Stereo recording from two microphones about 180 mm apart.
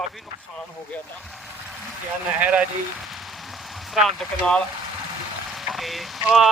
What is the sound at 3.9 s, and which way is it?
Speech, 5° left (ahead or behind).